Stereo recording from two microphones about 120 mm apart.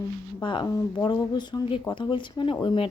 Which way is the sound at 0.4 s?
40° left (ahead or behind).